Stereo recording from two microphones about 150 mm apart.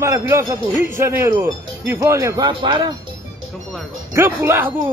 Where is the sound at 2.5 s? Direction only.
35° right (ahead or behind).